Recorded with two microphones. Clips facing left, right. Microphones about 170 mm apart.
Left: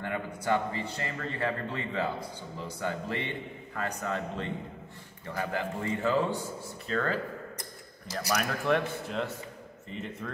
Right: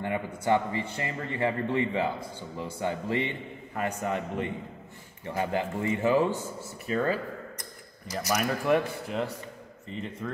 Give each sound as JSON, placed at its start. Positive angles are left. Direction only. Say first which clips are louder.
{"t": 0.0, "sound": "a man's voice", "louder": "right 3 dB", "side_deg": -15}